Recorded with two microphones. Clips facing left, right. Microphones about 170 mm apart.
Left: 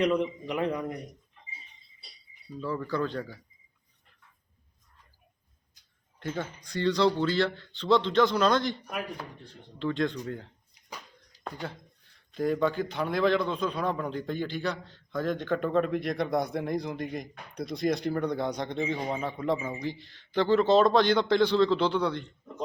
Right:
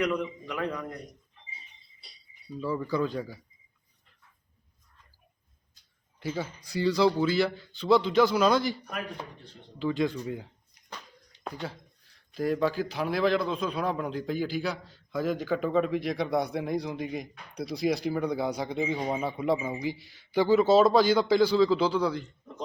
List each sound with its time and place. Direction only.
0.0 s a man's voice: 25° left (ahead or behind)
2.6 s speech: 10° right (ahead or behind)
6.1 s a man's voice: 5° right (ahead or behind)
12.1 s a man's voice: 5° right (ahead or behind)